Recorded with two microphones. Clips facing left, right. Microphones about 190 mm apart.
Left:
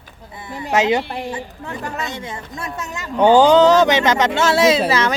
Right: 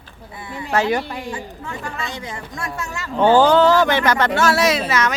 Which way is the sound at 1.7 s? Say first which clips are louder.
Left 3 dB; 40° left (ahead or behind).